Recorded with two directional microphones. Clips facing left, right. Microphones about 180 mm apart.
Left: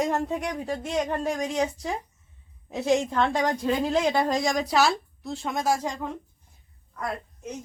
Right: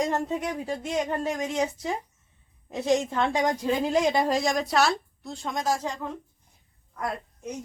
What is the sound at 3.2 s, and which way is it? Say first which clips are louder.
A woman's voice: even; 10° right (ahead or behind).